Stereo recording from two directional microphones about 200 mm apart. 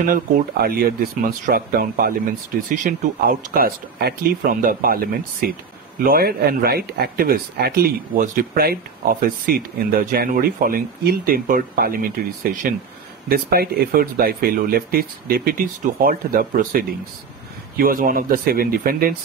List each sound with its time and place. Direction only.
0.0 s speech: 45° right (ahead or behind)